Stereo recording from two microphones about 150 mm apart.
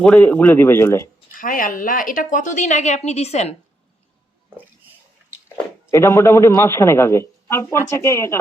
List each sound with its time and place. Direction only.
0.0 s a man's voice: 10° left (ahead or behind)
1.4 s a woman's voice: 65° left (ahead or behind); by 3.5 s 45° left (ahead or behind)
5.9 s a man's voice: 15° left (ahead or behind)